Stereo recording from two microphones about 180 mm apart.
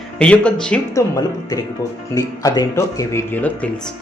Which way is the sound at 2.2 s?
20° left (ahead or behind).